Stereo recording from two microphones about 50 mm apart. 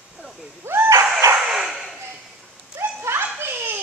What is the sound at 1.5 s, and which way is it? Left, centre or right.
Dog, centre.